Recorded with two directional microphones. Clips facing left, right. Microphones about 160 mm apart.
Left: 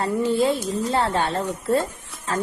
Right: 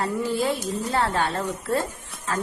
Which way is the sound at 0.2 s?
25° left (ahead or behind).